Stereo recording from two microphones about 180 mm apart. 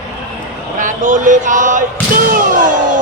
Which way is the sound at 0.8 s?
45° right (ahead or behind).